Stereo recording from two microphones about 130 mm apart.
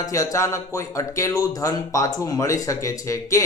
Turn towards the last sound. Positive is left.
turn(degrees=25)  # may be behind; listen again after turning